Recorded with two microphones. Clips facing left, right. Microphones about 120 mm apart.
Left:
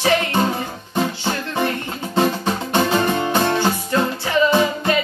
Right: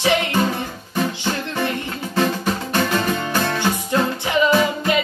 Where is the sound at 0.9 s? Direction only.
20° left (ahead or behind).